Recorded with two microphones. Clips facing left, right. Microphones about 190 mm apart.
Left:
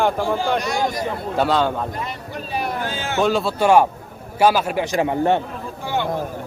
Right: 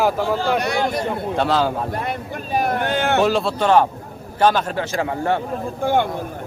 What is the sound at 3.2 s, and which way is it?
A man's voice, centre (ahead or behind).